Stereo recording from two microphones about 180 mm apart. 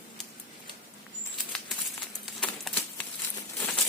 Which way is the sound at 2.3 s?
5° left (ahead or behind).